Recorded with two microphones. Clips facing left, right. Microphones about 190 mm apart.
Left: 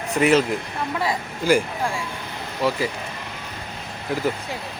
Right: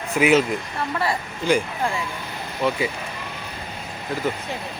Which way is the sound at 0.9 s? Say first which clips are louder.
Even; 10° left (ahead or behind).